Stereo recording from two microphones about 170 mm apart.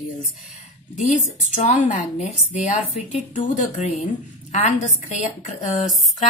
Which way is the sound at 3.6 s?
45° left (ahead or behind).